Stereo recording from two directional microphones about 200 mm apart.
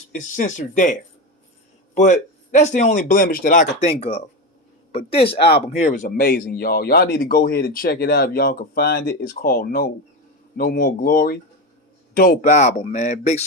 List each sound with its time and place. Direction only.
0.1 s speech: 40° left (ahead or behind)
2.0 s speech: 35° left (ahead or behind)
4.9 s speech: 30° left (ahead or behind)